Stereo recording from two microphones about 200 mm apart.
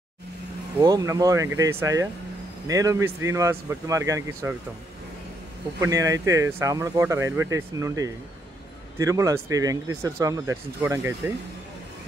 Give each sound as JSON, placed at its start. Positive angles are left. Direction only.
{"t": 0.7, "sound": "speech", "side_deg": -15}
{"t": 5.8, "sound": "speech", "side_deg": -15}